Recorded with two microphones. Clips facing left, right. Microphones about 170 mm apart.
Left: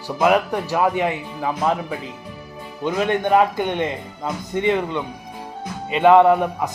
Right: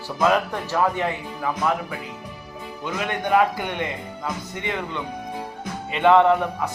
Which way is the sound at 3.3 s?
25° left (ahead or behind).